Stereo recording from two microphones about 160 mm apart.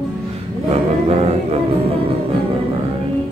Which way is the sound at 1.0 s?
40° right (ahead or behind).